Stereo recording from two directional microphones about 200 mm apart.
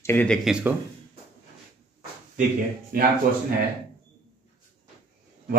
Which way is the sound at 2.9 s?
45° right (ahead or behind).